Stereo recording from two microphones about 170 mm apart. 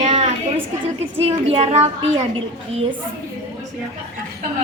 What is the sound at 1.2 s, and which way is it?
A woman's voice, 35° right (ahead or behind).